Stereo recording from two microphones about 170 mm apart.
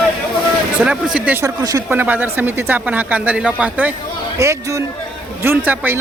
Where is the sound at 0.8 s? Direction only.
5° right (ahead or behind).